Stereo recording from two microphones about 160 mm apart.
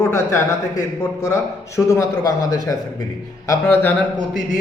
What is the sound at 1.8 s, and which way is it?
Speech, 20° left (ahead or behind).